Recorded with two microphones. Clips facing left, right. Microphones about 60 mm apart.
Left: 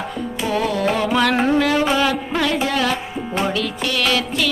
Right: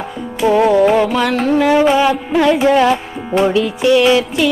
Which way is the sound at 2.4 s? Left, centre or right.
Right.